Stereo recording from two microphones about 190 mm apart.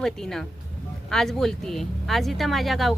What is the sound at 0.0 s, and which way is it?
Speech, centre (ahead or behind).